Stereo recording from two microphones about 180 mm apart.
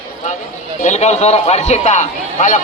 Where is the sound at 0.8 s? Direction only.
40° left (ahead or behind).